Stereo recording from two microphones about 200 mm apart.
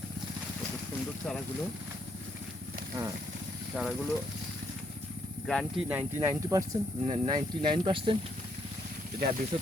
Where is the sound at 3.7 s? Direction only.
5° right (ahead or behind).